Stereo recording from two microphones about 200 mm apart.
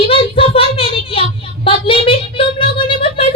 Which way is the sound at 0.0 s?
25° left (ahead or behind).